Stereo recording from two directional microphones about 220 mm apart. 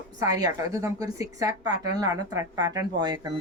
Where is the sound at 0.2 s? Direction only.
15° right (ahead or behind).